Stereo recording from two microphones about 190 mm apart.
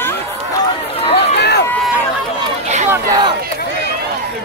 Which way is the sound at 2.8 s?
15° right (ahead or behind).